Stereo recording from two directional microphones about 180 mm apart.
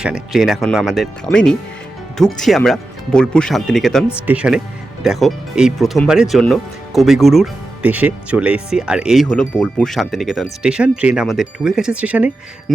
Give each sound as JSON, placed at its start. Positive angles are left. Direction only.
{"t": 0.0, "sound": "speech", "side_deg": -5}